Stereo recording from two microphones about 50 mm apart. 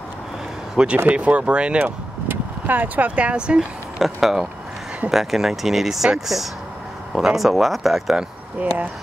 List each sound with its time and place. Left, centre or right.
1.0 s speech: right
1.9 s speech: right; by 3.6 s centre
4.0 s speech: centre
8.5 s speech: right